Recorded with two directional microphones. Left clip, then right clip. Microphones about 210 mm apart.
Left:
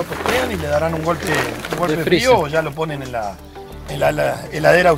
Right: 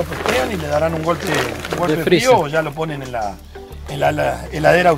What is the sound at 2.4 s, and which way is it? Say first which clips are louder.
A man's voice: even; 30° left (ahead or behind).